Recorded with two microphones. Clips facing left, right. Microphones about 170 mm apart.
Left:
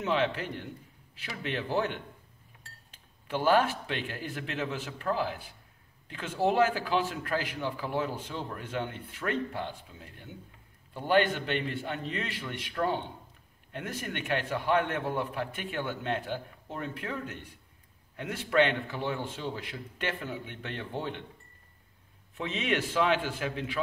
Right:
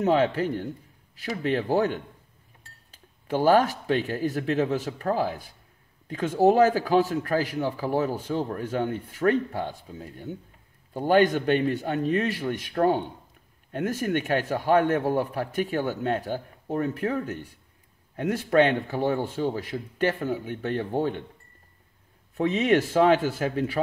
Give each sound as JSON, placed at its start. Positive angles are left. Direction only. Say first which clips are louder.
{"t": 0.0, "sound": "a man's voice", "louder": "right 7 dB", "side_deg": -40}
{"t": 22.4, "sound": "a man's voice", "louder": "right 9 dB", "side_deg": -40}